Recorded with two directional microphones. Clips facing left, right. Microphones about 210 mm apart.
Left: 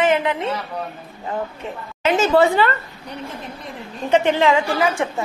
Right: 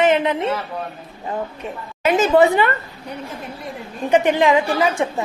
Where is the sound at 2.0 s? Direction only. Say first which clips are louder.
Right 1 dB; 15° right (ahead or behind).